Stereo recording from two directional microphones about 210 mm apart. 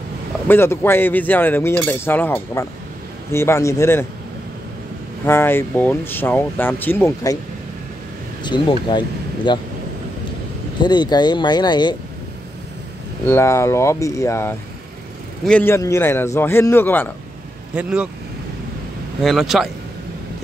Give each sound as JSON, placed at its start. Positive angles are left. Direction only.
{"t": 0.5, "sound": "speech", "side_deg": 10}
{"t": 5.2, "sound": "speech", "side_deg": 10}
{"t": 8.5, "sound": "speech", "side_deg": 20}
{"t": 10.8, "sound": "speech", "side_deg": 20}
{"t": 13.2, "sound": "speech", "side_deg": 10}
{"t": 17.7, "sound": "speech", "side_deg": -5}
{"t": 19.2, "sound": "speech", "side_deg": 0}